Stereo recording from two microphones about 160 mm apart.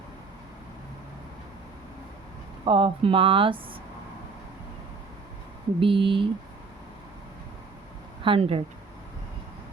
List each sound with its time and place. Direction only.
2.6 s speech: 35° right (ahead or behind)
5.8 s speech: 30° right (ahead or behind)
8.2 s speech: 35° right (ahead or behind)